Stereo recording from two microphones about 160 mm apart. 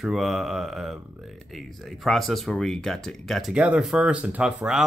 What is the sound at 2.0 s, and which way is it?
Speech, centre (ahead or behind).